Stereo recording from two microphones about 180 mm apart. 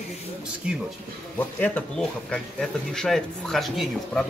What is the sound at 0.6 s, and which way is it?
Speech, 5° right (ahead or behind).